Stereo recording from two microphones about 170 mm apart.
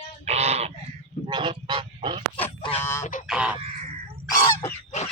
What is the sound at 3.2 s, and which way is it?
Crow, 5° right (ahead or behind).